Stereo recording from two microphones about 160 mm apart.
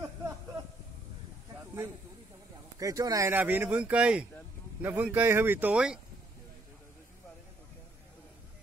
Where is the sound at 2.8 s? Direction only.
20° right (ahead or behind); by 5.9 s 5° right (ahead or behind).